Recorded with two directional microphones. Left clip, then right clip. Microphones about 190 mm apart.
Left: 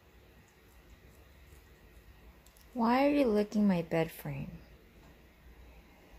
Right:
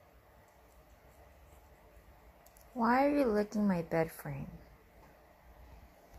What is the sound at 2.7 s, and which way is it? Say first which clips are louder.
Speech: left 1 dB; 10° left (ahead or behind).